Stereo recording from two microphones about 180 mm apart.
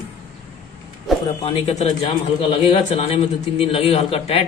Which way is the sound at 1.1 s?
Centre (ahead or behind).